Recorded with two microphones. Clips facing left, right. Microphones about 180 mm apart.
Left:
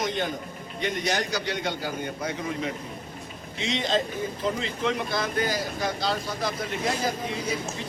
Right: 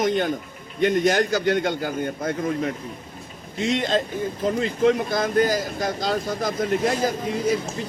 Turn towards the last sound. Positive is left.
turn(degrees=-45)  # may be behind; listen again after turning